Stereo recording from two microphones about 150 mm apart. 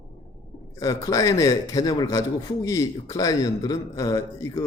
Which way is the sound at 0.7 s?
20° left (ahead or behind).